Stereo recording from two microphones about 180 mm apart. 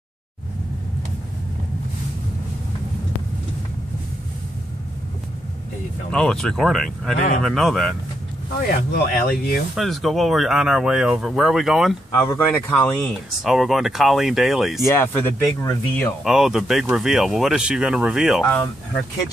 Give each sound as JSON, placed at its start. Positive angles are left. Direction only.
{"t": 6.1, "sound": "speech", "side_deg": 5}
{"t": 8.5, "sound": "speech", "side_deg": 55}
{"t": 9.8, "sound": "speech", "side_deg": 0}
{"t": 12.2, "sound": "speech", "side_deg": 10}
{"t": 13.4, "sound": "speech", "side_deg": 0}
{"t": 14.9, "sound": "speech", "side_deg": 10}
{"t": 16.3, "sound": "speech", "side_deg": -5}